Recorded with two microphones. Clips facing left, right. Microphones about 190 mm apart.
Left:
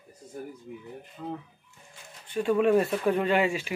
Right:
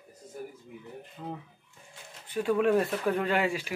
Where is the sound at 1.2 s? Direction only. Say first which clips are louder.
Left 3 dB; 10° right (ahead or behind).